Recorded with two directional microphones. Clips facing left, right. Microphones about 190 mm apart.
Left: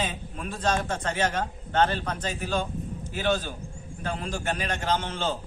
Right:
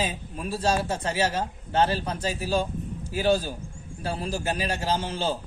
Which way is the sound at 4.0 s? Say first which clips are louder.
Right 1 dB; 35° right (ahead or behind).